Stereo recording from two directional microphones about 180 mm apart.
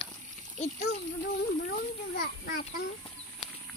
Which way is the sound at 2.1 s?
55° left (ahead or behind).